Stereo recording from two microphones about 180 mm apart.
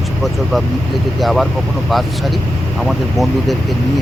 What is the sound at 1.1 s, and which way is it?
Speech, centre (ahead or behind).